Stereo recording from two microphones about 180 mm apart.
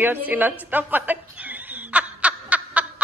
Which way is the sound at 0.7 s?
10° right (ahead or behind).